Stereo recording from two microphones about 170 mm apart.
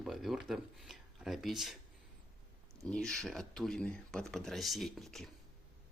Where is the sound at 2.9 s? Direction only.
5° left (ahead or behind).